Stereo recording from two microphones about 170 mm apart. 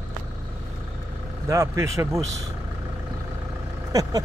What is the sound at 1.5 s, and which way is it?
Speech, 20° right (ahead or behind).